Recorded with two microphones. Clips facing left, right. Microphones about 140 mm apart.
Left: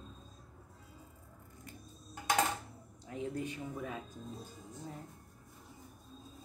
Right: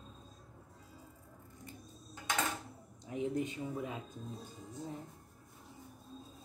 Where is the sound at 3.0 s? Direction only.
20° right (ahead or behind).